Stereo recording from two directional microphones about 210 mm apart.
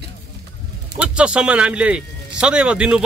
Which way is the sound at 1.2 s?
5° right (ahead or behind).